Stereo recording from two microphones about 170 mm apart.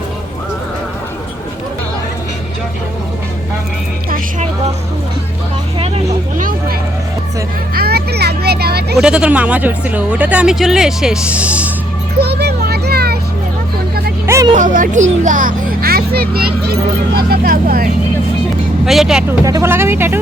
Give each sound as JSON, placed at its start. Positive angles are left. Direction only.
{"t": 5.8, "sound": "vehicle", "side_deg": -45}
{"t": 7.8, "sound": "a sound", "side_deg": -70}
{"t": 9.0, "sound": "speech", "side_deg": -5}
{"t": 12.2, "sound": "vehicle", "side_deg": -70}
{"t": 14.3, "sound": "music", "side_deg": -15}
{"t": 14.5, "sound": "speech", "side_deg": -50}
{"t": 18.9, "sound": "speech", "side_deg": 0}
{"t": 19.5, "sound": "speech", "side_deg": -15}